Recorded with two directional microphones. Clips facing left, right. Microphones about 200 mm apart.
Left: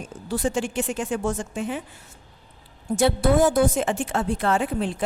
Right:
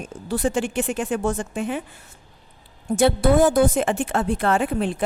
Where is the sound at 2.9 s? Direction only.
60° right (ahead or behind).